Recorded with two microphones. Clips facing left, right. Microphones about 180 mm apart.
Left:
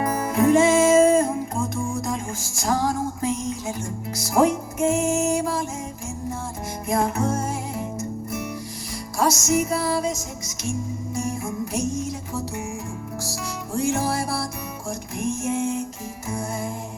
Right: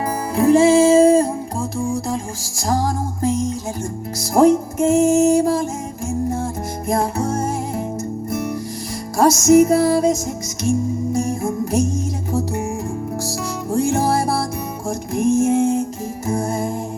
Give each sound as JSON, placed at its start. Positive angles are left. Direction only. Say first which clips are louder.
{"t": 0.0, "sound": "music", "louder": "right 2 dB", "side_deg": -30}
{"t": 6.8, "sound": "music", "louder": "right 2 dB", "side_deg": -35}
{"t": 13.7, "sound": "music", "louder": "right 5 dB", "side_deg": -35}